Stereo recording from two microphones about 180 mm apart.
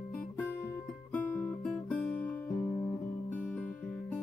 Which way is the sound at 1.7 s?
Centre (ahead or behind).